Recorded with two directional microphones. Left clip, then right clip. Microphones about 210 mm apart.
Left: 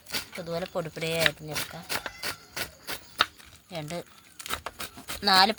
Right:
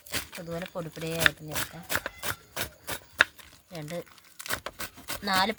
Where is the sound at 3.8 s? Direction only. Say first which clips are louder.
Left 1 dB; 15° left (ahead or behind).